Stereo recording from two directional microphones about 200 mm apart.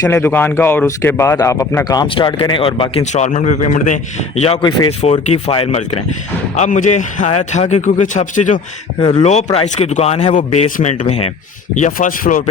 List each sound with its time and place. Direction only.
0.0 s a man's voice: 10° left (ahead or behind); by 5.8 s 30° left (ahead or behind)
6.6 s a man's voice: 40° left (ahead or behind)
9.0 s speech: 20° left (ahead or behind)
9.7 s a man's voice: 35° left (ahead or behind)